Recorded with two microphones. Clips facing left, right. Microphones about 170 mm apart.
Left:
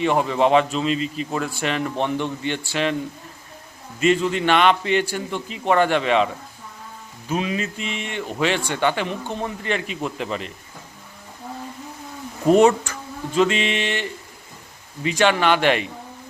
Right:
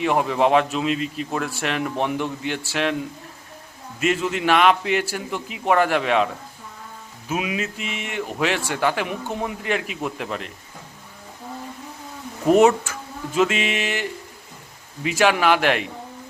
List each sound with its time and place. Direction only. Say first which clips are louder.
0.0 s speech: left 1 dB; 5° right (ahead or behind)
4.0 s speech: left 3 dB; 5° right (ahead or behind)
7.3 s speech: left 1 dB; 5° right (ahead or behind)
12.5 s speech: even; 5° right (ahead or behind)